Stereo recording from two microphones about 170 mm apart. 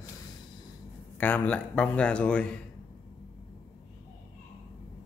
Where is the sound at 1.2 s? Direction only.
10° left (ahead or behind).